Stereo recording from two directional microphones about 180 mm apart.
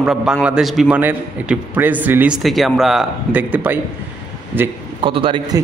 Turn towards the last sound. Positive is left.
turn(degrees=-25)  # may be behind; listen again after turning